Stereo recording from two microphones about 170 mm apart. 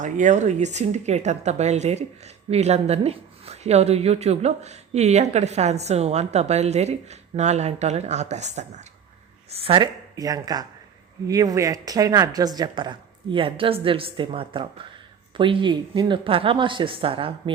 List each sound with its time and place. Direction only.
0.0 s speech: 45° right (ahead or behind)